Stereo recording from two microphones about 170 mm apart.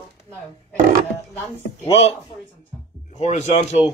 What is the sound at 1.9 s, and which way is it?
Speech, 35° left (ahead or behind).